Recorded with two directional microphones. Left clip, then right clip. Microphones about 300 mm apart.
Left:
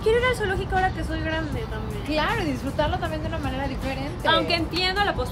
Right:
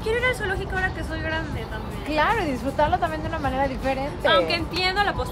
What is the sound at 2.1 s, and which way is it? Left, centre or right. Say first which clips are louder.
A woman's voice: right 3 dB; right.